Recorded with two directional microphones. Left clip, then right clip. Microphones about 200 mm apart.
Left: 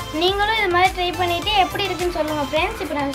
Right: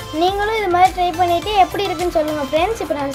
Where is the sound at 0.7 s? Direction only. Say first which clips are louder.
Right 4 dB; 45° right (ahead or behind).